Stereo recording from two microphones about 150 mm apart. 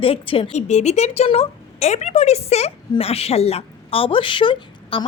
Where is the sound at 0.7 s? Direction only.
50° left (ahead or behind).